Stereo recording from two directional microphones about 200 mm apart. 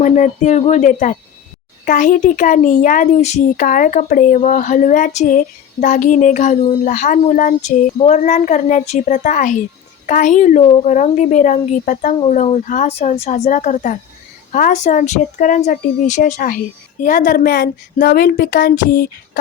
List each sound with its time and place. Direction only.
0.0 s a woman's voice: 35° left (ahead or behind)
10.7 s a woman's voice: 25° left (ahead or behind); by 19.4 s 50° left (ahead or behind)